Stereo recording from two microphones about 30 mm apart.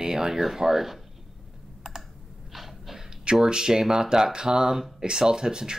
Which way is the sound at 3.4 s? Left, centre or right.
Right.